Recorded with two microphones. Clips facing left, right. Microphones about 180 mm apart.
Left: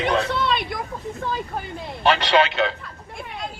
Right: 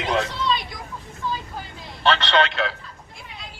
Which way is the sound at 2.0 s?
10° left (ahead or behind).